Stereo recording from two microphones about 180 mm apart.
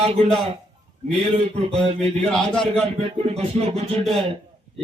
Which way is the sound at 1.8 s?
35° right (ahead or behind).